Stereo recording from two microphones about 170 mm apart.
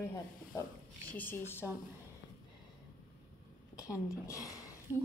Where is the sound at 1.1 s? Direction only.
10° left (ahead or behind).